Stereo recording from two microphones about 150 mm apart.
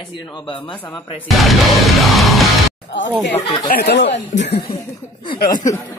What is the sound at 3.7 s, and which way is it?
Speech, 90° left.